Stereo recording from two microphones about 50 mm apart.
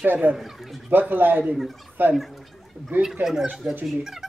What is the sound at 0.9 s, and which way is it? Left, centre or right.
Speech, right.